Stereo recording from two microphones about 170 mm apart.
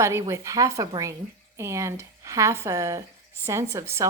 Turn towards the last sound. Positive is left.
turn(degrees=-15)  # may be behind; listen again after turning